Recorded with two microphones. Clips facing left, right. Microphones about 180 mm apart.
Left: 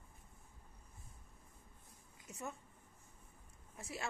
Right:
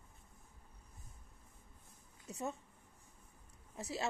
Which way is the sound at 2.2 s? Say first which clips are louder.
Right 5 dB; 20° right (ahead or behind).